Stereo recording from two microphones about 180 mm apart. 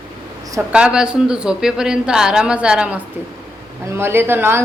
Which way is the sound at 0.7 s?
5° right (ahead or behind).